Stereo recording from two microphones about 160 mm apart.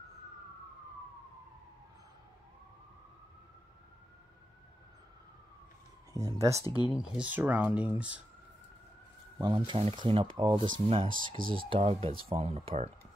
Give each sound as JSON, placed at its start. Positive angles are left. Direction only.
{"t": 6.1, "sound": "speech", "side_deg": -20}
{"t": 6.6, "sound": "speech", "side_deg": 25}
{"t": 6.9, "sound": "speech", "side_deg": -5}
{"t": 9.7, "sound": "speech", "side_deg": -35}